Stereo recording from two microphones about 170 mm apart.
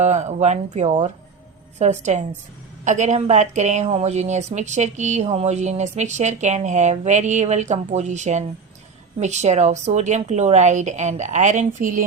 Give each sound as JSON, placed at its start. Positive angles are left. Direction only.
{"t": 0.0, "sound": "a woman's voice", "side_deg": -45}